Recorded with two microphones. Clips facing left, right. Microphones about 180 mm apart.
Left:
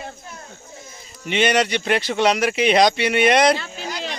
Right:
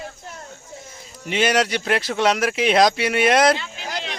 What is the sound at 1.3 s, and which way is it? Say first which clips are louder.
Speech: left 1 dB; 5° right (ahead or behind).